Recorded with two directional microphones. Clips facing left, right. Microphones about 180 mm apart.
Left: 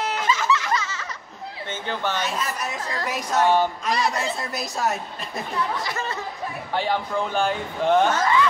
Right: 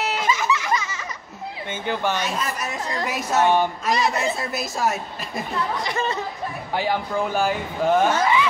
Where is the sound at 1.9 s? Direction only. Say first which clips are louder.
Right 3 dB; 10° right (ahead or behind).